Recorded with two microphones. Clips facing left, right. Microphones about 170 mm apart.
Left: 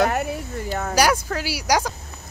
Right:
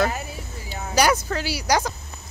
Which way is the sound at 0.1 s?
60° left (ahead or behind).